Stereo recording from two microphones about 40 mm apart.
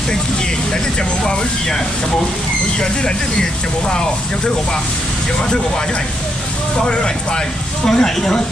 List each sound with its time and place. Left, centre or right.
2.8 s speech: centre
6.8 s speech: left